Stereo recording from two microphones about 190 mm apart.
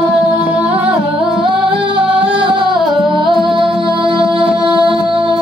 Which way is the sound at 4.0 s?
25° right (ahead or behind).